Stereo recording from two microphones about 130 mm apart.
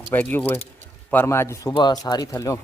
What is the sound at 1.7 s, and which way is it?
Speech, 35° left (ahead or behind).